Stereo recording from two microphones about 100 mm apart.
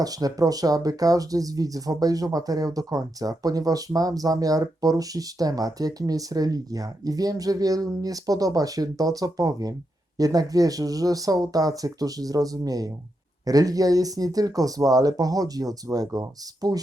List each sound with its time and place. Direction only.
0.0 s speech: 40° right (ahead or behind)